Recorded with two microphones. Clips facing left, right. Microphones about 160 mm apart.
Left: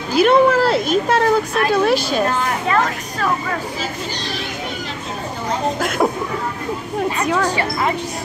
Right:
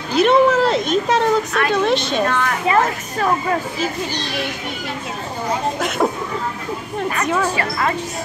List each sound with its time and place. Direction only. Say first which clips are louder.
0.1 s speech: left 1 dB; 5° left (ahead or behind)
5.8 s speech: left 2 dB; 5° left (ahead or behind)
7.2 s speech: even; centre (ahead or behind)